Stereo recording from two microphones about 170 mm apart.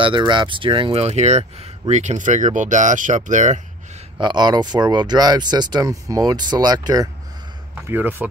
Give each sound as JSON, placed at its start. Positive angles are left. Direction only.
{"t": 0.0, "sound": "speech", "side_deg": -30}
{"t": 4.2, "sound": "speech", "side_deg": -25}
{"t": 7.8, "sound": "speech", "side_deg": -10}